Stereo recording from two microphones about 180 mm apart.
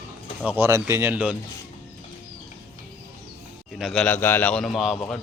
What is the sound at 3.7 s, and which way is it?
Speech, centre (ahead or behind).